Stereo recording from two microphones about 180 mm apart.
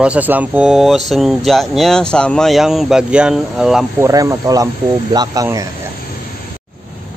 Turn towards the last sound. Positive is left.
turn(degrees=-20)  # may be behind; listen again after turning